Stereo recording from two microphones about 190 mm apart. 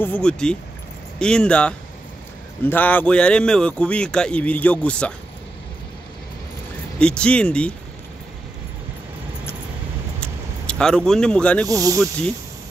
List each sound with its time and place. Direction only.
0.0 s speech: 5° left (ahead or behind)
7.0 s speech: 5° left (ahead or behind)
10.2 s vehicle: 5° left (ahead or behind)
11.6 s speech: 20° right (ahead or behind)